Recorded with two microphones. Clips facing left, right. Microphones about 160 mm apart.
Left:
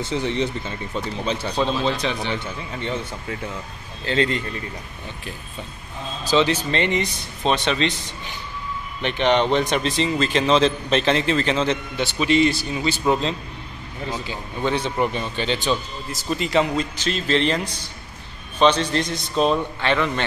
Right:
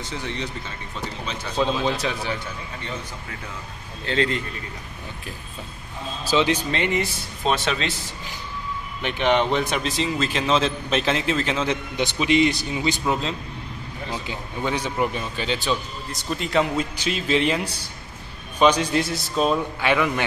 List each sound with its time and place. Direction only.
0.0 s speech: 30° left (ahead or behind)
1.6 s a man's voice: 10° right (ahead or behind)
4.0 s a man's voice: centre (ahead or behind)
6.3 s a man's voice: 10° right (ahead or behind)
9.0 s a man's voice: 5° right (ahead or behind)
13.0 s a man's voice: centre (ahead or behind)
14.2 s a man's voice: 10° right (ahead or behind)
16.9 s a man's voice: 10° right (ahead or behind)